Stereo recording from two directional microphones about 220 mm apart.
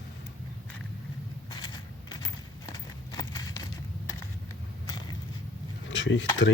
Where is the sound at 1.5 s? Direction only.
20° left (ahead or behind).